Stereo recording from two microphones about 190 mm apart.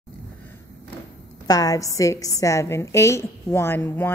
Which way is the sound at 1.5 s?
20° left (ahead or behind).